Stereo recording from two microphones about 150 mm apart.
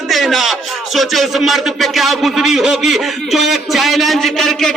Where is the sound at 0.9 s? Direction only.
Centre (ahead or behind).